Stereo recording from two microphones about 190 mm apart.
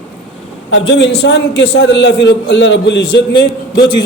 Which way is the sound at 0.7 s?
75° left (ahead or behind).